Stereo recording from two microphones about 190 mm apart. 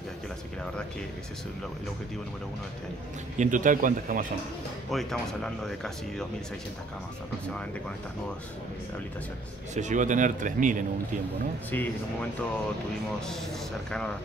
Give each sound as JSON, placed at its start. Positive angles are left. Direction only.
{"t": 3.3, "sound": "speech", "side_deg": -40}
{"t": 4.9, "sound": "speech", "side_deg": 0}
{"t": 9.8, "sound": "speech", "side_deg": -40}
{"t": 11.7, "sound": "speech", "side_deg": 10}